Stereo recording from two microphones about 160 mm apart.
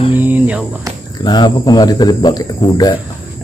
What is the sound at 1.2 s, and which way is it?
Speech, 25° left (ahead or behind).